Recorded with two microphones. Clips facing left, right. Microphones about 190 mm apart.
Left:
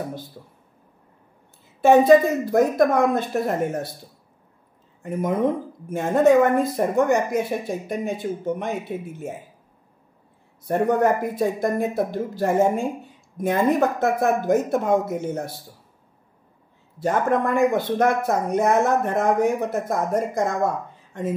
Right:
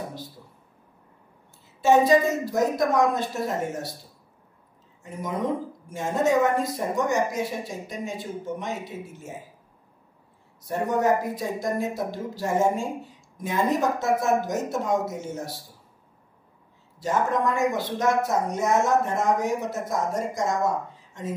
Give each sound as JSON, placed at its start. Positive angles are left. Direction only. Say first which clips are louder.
{"t": 1.8, "sound": "a woman's voice", "louder": "left 5 dB", "side_deg": 55}
{"t": 5.0, "sound": "a woman's voice", "louder": "left 6 dB", "side_deg": 55}
{"t": 10.7, "sound": "a woman's voice", "louder": "left 4 dB", "side_deg": 55}
{"t": 17.0, "sound": "a woman's voice", "louder": "left 3 dB", "side_deg": 55}